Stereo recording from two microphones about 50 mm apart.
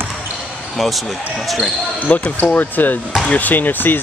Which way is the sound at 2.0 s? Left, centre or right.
Left.